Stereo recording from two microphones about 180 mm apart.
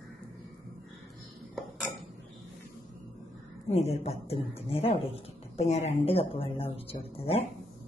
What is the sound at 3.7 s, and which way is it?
A woman's voice, 35° left (ahead or behind).